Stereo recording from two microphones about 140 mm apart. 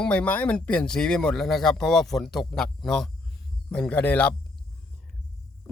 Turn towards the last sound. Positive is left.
turn(degrees=10)  # may be behind; listen again after turning